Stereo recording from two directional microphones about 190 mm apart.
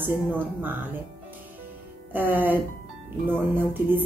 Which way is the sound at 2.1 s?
10° right (ahead or behind).